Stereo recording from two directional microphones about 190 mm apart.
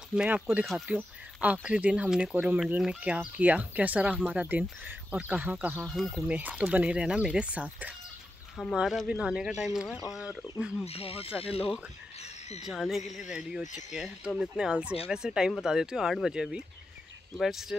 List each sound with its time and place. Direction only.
0.1 s speech: 5° right (ahead or behind)
6.2 s speech: 10° right (ahead or behind)
10.9 s speech: 30° left (ahead or behind)
12.2 s a sound: 35° left (ahead or behind)
12.6 s speech: centre (ahead or behind)